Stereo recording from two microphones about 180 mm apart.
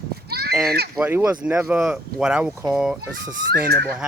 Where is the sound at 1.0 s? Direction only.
15° right (ahead or behind).